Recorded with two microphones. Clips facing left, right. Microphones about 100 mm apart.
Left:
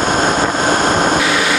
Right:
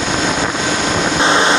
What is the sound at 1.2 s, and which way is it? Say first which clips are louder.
Vehicle: right 3 dB; 25° right (ahead or behind).